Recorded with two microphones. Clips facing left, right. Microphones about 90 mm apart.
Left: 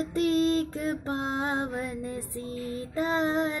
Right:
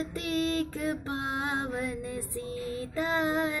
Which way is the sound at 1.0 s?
35° left (ahead or behind).